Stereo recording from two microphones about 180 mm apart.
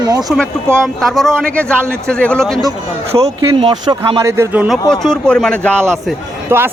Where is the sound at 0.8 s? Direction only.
Centre (ahead or behind).